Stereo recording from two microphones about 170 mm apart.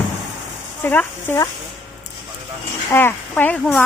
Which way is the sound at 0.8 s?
10° left (ahead or behind).